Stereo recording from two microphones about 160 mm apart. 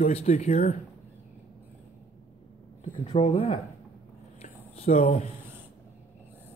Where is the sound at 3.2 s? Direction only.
40° left (ahead or behind).